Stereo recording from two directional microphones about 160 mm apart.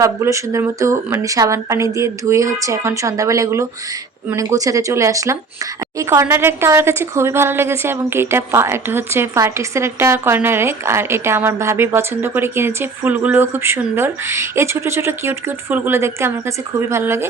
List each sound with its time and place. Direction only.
0.0 s speech: 20° right (ahead or behind)